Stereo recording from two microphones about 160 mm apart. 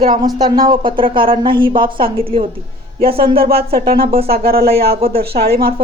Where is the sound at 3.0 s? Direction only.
70° right (ahead or behind).